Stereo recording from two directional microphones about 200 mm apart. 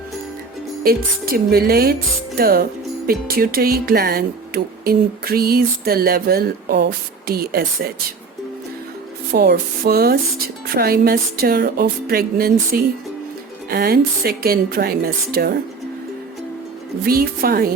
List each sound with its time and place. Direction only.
0.9 s speech: 50° right (ahead or behind)
9.3 s speech: 50° right (ahead or behind)
17.1 s speech: 50° right (ahead or behind)